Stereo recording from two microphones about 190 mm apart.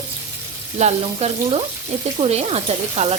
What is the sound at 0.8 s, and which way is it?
Speech, 35° right (ahead or behind).